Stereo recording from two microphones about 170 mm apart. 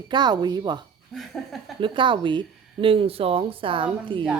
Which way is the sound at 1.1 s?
Centre (ahead or behind).